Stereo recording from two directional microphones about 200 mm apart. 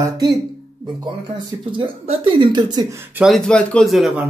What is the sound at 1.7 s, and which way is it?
Speech, 25° right (ahead or behind).